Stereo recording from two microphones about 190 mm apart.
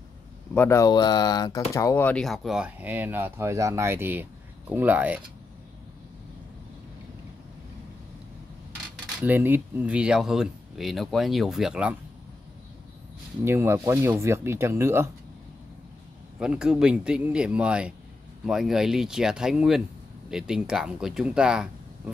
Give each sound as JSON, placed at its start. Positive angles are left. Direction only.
{"t": 0.6, "sound": "speech", "side_deg": 15}
{"t": 9.2, "sound": "speech", "side_deg": -10}
{"t": 13.4, "sound": "speech", "side_deg": -10}
{"t": 16.3, "sound": "speech", "side_deg": -5}